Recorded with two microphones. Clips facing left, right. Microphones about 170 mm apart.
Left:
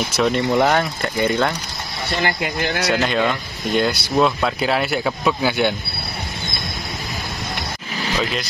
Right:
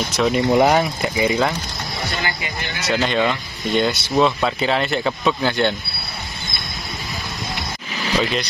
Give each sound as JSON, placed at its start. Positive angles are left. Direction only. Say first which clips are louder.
{"t": 0.1, "sound": "speech", "louder": "right 1 dB", "side_deg": 0}
{"t": 0.5, "sound": "speech", "louder": "right 2 dB", "side_deg": -10}
{"t": 2.4, "sound": "speech", "louder": "left 7 dB", "side_deg": 65}
{"t": 2.9, "sound": "speech", "louder": "right 2 dB", "side_deg": 0}
{"t": 8.2, "sound": "speech", "louder": "right 3 dB", "side_deg": 0}